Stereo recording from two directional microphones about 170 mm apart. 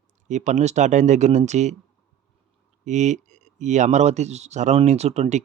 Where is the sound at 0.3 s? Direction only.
45° right (ahead or behind).